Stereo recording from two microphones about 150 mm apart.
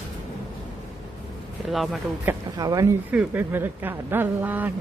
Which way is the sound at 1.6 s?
Centre (ahead or behind).